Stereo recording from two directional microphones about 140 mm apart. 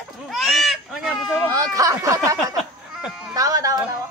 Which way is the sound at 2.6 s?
Centre (ahead or behind).